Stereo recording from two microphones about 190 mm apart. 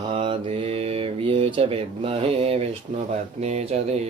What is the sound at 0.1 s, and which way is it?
Speech, 30° right (ahead or behind).